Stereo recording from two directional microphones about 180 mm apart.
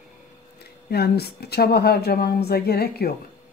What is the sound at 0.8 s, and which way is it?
Speech, 60° left (ahead or behind).